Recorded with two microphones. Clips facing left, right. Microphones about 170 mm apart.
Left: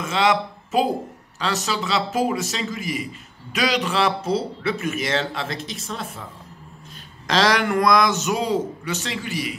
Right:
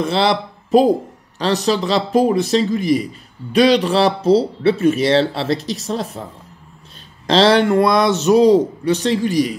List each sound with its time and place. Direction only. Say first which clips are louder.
0.0 s speech: right 4 dB; 35° right (ahead or behind)
7.2 s speech: right 7 dB; 30° right (ahead or behind)